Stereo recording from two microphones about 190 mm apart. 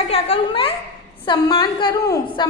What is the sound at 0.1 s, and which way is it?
A woman's voice, 30° left (ahead or behind).